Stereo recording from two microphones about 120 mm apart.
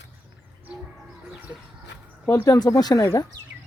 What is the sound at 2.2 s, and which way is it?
Speech, 25° left (ahead or behind).